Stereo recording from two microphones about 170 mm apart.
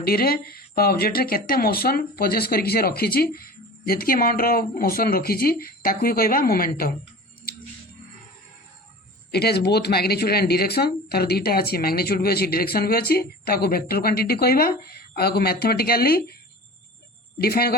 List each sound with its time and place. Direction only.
0.0 s speech: 60° left (ahead or behind)
7.5 s music: 60° left (ahead or behind)
9.3 s speech: 70° left (ahead or behind)
17.3 s speech: 65° left (ahead or behind)